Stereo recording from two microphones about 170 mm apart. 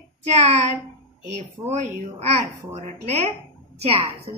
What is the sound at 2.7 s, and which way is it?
Speech, 40° right (ahead or behind).